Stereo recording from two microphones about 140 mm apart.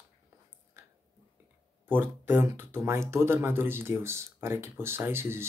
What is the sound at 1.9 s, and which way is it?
Speech, 15° right (ahead or behind).